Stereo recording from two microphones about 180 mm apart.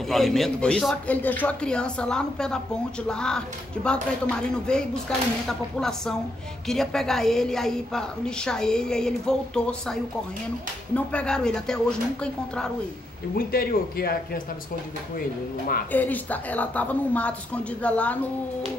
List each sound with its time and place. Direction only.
0.1 s a woman's voice: centre (ahead or behind)
11.1 s a woman's voice: 5° left (ahead or behind)
13.5 s speech: 55° left (ahead or behind)
15.9 s a woman's voice: 10° left (ahead or behind)